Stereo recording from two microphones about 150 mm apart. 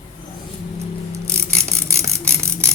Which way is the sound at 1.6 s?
20° right (ahead or behind).